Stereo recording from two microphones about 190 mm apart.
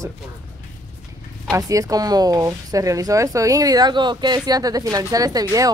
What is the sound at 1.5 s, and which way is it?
Speech, 15° right (ahead or behind).